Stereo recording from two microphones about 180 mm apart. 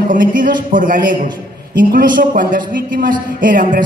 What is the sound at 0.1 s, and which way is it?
A man's voice, 50° right (ahead or behind).